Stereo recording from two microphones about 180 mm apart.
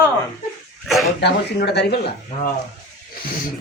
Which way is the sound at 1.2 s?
70° left (ahead or behind).